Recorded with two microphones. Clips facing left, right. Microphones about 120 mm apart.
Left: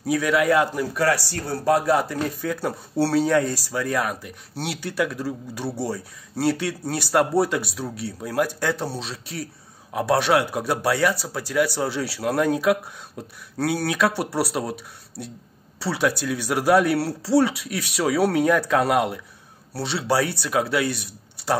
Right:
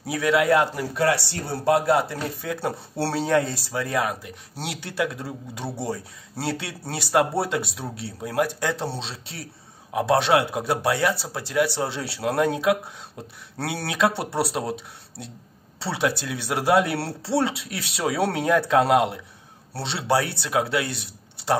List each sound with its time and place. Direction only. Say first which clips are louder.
0.1 s a man's voice: even; 25° right (ahead or behind)